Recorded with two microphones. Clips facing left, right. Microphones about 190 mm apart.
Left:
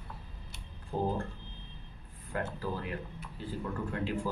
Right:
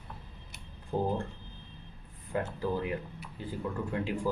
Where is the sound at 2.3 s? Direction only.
20° right (ahead or behind).